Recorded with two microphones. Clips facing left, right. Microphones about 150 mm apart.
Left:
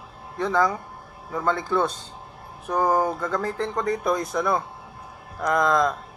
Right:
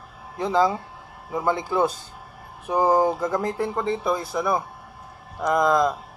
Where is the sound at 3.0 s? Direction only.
25° right (ahead or behind).